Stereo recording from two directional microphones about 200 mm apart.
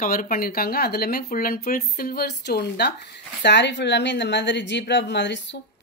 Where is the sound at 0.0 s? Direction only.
40° left (ahead or behind).